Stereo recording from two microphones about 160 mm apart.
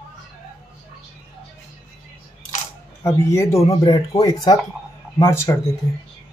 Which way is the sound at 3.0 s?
20° left (ahead or behind).